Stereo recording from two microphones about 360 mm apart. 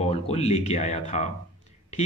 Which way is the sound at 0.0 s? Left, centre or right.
Centre.